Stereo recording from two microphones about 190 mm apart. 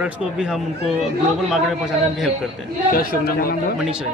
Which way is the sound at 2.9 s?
50° left (ahead or behind).